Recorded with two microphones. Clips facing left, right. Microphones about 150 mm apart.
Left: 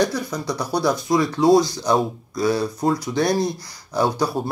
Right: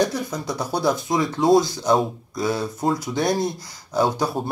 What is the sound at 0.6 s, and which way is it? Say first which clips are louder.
Speech: even; 25° right (ahead or behind).